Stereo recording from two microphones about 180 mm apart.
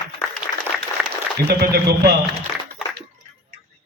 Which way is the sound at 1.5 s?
60° right (ahead or behind).